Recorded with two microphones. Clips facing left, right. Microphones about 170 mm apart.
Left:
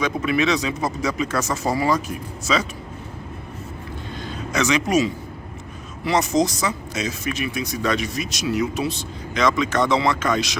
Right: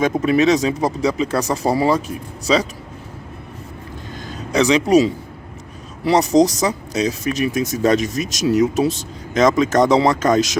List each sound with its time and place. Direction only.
0.0 s speech: 40° right (ahead or behind)
4.3 s speech: 35° right (ahead or behind)